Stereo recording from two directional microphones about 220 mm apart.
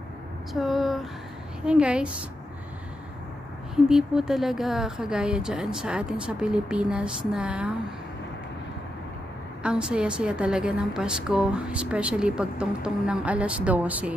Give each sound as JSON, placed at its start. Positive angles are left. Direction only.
{"t": 0.5, "sound": "a woman's voice", "side_deg": 0}
{"t": 3.7, "sound": "a woman's voice", "side_deg": 0}
{"t": 9.6, "sound": "a woman's voice", "side_deg": -5}